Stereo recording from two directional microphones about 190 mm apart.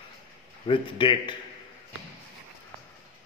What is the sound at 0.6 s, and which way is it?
Speech, 25° left (ahead or behind).